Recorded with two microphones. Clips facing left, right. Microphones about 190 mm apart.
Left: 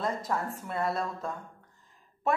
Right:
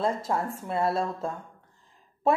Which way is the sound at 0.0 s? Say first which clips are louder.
Right 4 dB; 30° right (ahead or behind).